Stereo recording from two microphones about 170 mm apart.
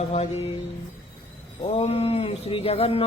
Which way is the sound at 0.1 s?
40° left (ahead or behind).